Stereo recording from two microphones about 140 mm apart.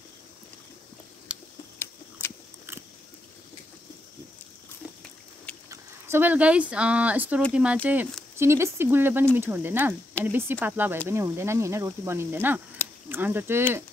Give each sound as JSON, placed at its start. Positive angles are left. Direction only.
{"t": 1.3, "sound": "tick-tock", "side_deg": -5}
{"t": 1.8, "sound": "a sound", "side_deg": 15}
{"t": 5.7, "sound": "speech", "side_deg": -15}